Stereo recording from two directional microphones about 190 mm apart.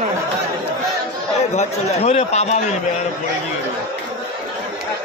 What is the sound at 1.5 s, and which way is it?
A man's voice, 35° left (ahead or behind).